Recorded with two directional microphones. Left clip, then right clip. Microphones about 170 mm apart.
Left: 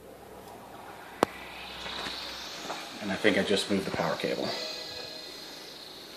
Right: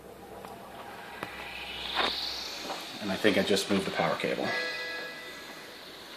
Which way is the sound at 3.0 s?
15° right (ahead or behind).